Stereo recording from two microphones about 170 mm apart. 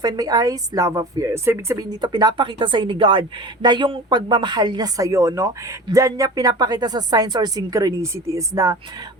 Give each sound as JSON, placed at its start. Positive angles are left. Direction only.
{"t": 0.0, "sound": "a woman's voice", "side_deg": -20}